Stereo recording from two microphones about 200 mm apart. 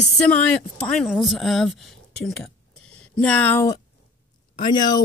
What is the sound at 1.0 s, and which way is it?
Speech, centre (ahead or behind).